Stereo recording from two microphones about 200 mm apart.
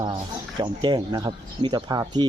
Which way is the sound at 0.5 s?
20° right (ahead or behind).